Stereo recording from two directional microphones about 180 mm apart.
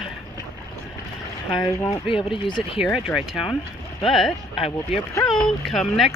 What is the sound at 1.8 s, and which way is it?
Speech, 25° left (ahead or behind).